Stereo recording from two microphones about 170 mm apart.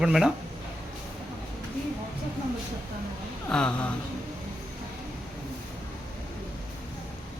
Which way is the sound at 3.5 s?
5° left (ahead or behind).